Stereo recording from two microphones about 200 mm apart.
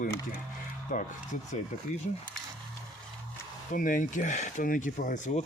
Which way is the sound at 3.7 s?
40° left (ahead or behind).